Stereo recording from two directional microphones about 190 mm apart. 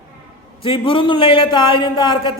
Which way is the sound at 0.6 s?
25° left (ahead or behind).